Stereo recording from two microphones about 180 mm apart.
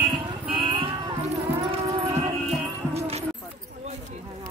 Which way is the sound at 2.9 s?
35° right (ahead or behind).